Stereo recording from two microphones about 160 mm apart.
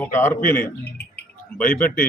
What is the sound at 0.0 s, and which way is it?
A man's voice, 15° left (ahead or behind).